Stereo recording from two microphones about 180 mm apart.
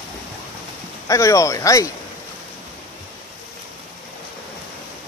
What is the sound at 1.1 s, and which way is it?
Speech, 15° left (ahead or behind).